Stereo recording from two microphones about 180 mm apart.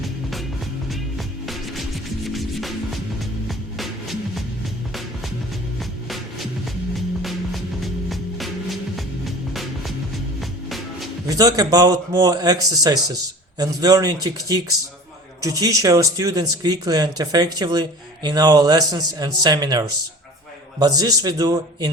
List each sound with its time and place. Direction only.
0.0 s music: centre (ahead or behind)
1.5 s music: centre (ahead or behind)
7.2 s music: centre (ahead or behind)
11.3 s speech: 20° right (ahead or behind)